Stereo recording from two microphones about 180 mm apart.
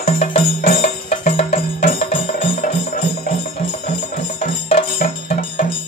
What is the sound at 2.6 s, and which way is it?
Music, 55° left (ahead or behind).